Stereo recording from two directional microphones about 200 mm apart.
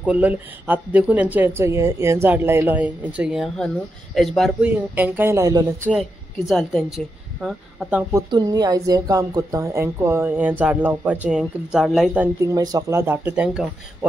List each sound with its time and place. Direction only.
0.0 s speech: 10° right (ahead or behind)
5.9 s a woman's voice: centre (ahead or behind)
8.1 s speech: 20° right (ahead or behind); by 12.3 s 5° right (ahead or behind)
12.5 s speech: 20° right (ahead or behind)